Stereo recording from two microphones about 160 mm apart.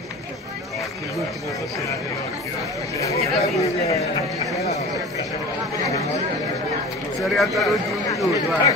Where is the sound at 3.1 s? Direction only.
40° left (ahead or behind).